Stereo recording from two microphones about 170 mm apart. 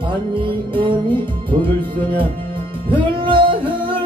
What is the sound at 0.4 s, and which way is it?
Music, 30° right (ahead or behind).